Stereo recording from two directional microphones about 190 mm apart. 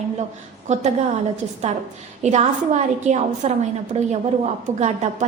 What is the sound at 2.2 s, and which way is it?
A woman's voice, 35° right (ahead or behind).